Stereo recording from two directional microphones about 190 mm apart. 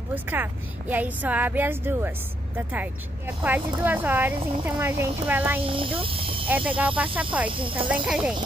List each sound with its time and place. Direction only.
0.1 s a woman's voice: 10° right (ahead or behind)
5.6 s speech: 25° right (ahead or behind)
6.4 s speech: 10° right (ahead or behind)
7.4 s speech: 25° right (ahead or behind)
7.9 s speech: 5° right (ahead or behind)